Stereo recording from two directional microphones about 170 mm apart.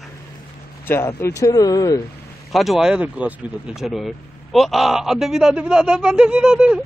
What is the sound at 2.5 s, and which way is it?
Speech, centre (ahead or behind).